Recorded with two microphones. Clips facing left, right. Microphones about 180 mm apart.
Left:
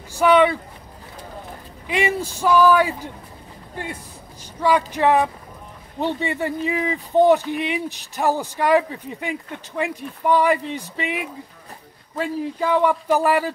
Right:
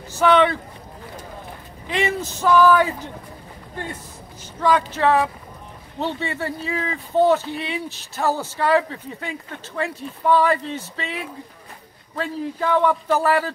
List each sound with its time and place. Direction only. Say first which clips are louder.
0.1 s speech: left 1 dB; 10° left (ahead or behind)
1.9 s speech: left 1 dB; 10° left (ahead or behind)
4.6 s speech: even; 10° left (ahead or behind)